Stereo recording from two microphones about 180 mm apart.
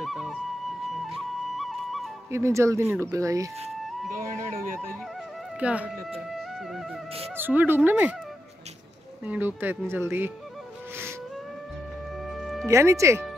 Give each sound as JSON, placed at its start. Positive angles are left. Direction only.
{"t": 0.0, "sound": "music", "side_deg": 0}
{"t": 1.1, "sound": "flute", "side_deg": 0}
{"t": 2.3, "sound": "speech", "side_deg": -15}
{"t": 4.4, "sound": "speech", "side_deg": -50}
{"t": 5.6, "sound": "speech", "side_deg": -5}
{"t": 6.1, "sound": "music", "side_deg": 0}
{"t": 7.3, "sound": "speech", "side_deg": -10}
{"t": 9.2, "sound": "speech", "side_deg": -10}
{"t": 12.3, "sound": "music", "side_deg": 0}
{"t": 12.6, "sound": "speech", "side_deg": -15}